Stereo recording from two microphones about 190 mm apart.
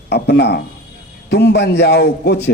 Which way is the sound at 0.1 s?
60° left (ahead or behind).